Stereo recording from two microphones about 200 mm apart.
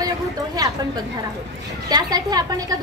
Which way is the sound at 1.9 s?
20° right (ahead or behind).